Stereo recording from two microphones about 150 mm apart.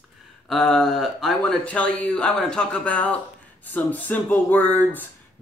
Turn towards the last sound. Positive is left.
turn(degrees=10)  # may be behind; listen again after turning